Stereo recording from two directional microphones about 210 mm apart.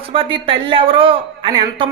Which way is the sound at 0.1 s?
25° right (ahead or behind).